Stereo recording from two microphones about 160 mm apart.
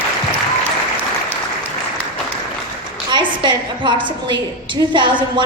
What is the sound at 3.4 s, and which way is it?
A woman's voice, 30° right (ahead or behind).